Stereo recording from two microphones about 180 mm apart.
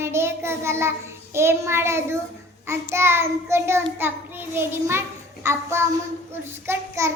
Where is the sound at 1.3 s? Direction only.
15° right (ahead or behind).